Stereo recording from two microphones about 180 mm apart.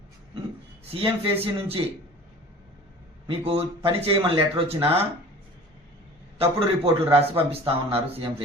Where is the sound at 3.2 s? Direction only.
30° right (ahead or behind).